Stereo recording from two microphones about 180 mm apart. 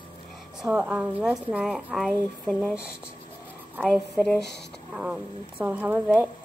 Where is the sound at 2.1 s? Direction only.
10° left (ahead or behind).